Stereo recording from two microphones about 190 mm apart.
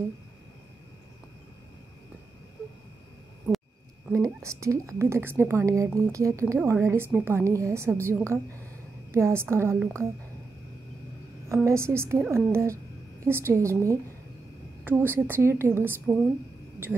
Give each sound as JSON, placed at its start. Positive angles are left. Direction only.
{"t": 4.1, "sound": "a woman's voice", "side_deg": -15}
{"t": 11.4, "sound": "a woman's voice", "side_deg": -15}